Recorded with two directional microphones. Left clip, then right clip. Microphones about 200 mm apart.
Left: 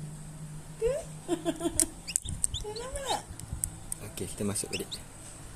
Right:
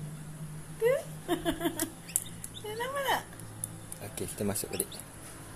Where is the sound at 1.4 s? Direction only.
20° left (ahead or behind).